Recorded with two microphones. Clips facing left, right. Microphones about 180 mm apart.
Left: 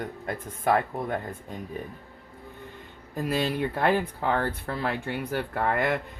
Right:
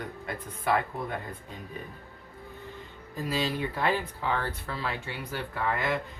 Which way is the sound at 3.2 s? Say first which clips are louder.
Left 3 dB; 55° left (ahead or behind).